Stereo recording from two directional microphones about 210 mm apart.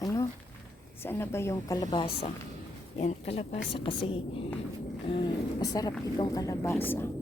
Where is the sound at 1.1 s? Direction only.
10° left (ahead or behind); by 4.0 s 25° left (ahead or behind).